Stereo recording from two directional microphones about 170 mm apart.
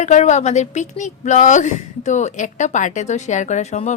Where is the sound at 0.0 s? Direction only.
45° left (ahead or behind).